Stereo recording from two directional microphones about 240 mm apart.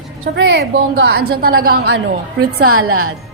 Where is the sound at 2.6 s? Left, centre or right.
Right.